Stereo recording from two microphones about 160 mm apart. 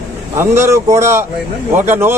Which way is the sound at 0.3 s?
15° right (ahead or behind).